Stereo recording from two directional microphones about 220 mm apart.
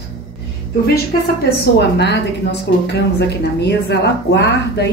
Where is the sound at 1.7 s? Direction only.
50° left (ahead or behind).